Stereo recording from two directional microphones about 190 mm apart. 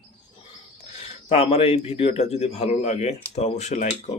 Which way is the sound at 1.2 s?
30° left (ahead or behind).